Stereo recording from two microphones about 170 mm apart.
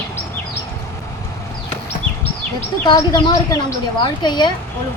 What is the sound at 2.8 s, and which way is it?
Speech, 25° left (ahead or behind).